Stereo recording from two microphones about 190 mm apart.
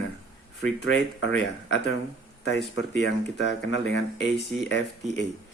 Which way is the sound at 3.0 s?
65° left (ahead or behind).